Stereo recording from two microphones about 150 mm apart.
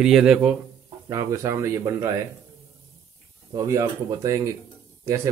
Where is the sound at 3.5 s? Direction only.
20° right (ahead or behind).